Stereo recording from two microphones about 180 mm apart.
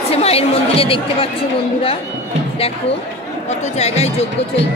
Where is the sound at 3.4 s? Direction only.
40° left (ahead or behind).